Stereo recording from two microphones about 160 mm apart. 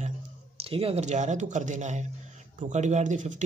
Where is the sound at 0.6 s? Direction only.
35° right (ahead or behind).